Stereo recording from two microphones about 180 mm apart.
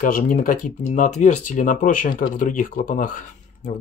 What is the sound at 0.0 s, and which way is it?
Speech, 50° left (ahead or behind).